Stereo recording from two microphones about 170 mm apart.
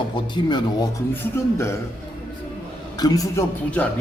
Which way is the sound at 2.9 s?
25° left (ahead or behind).